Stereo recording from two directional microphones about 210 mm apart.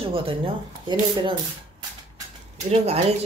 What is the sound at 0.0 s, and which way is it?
Speech, 25° right (ahead or behind).